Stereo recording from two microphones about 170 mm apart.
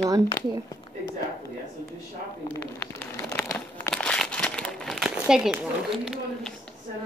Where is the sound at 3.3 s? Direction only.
15° left (ahead or behind); by 6.2 s 5° right (ahead or behind).